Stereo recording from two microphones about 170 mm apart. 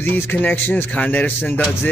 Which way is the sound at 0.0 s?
10° left (ahead or behind).